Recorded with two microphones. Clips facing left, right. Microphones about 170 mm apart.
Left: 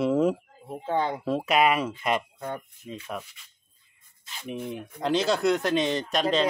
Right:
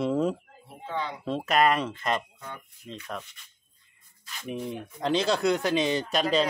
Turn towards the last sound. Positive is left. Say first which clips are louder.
# even
turn(degrees=0)  # may be behind; listen again after turning